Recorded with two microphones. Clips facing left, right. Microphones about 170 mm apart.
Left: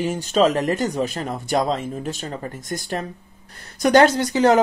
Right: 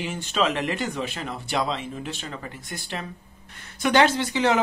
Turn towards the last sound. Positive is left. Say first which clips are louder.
# left 6 dB
turn(degrees=40)  # may be behind; listen again after turning